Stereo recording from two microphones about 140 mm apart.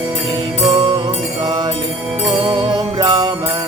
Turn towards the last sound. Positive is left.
turn(degrees=-30)  # may be behind; listen again after turning